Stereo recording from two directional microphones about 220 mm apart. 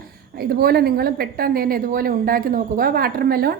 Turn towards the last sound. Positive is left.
turn(degrees=-45)  # may be behind; listen again after turning